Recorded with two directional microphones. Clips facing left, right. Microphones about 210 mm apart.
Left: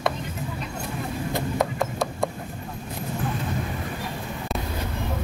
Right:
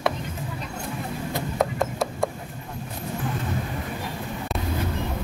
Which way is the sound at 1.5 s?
Centre (ahead or behind).